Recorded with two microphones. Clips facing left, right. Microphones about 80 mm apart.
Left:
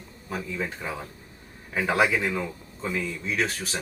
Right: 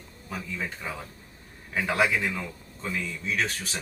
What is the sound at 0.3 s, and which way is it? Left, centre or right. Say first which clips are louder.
A man's voice: left 3 dB; centre.